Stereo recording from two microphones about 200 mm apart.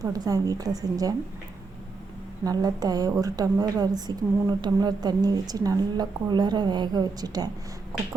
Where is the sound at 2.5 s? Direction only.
20° right (ahead or behind).